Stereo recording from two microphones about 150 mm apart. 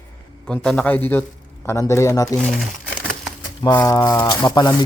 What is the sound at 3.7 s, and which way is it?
Speech, 20° left (ahead or behind).